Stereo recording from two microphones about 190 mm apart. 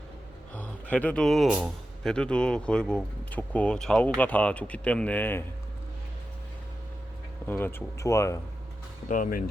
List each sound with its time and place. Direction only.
0.5 s speech: 5° left (ahead or behind)
7.4 s speech: 10° left (ahead or behind)
9.0 s speech: 45° left (ahead or behind)